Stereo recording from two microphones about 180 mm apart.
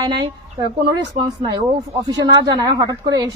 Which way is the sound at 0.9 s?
25° right (ahead or behind).